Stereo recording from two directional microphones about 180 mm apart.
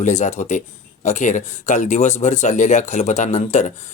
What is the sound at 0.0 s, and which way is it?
Speech, 40° left (ahead or behind).